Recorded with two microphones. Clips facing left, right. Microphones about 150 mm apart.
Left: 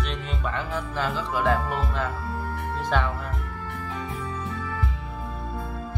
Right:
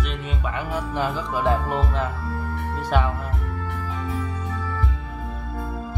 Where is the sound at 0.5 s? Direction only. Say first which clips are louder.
Right 5 dB; 15° right (ahead or behind).